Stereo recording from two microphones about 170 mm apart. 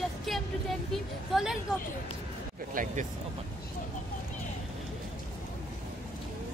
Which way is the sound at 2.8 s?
55° right (ahead or behind).